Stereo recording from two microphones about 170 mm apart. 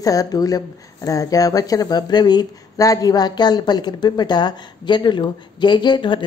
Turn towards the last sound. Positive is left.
turn(degrees=30)  # may be behind; listen again after turning